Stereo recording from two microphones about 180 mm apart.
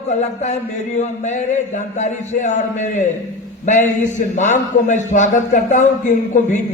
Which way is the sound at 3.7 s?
45° left (ahead or behind).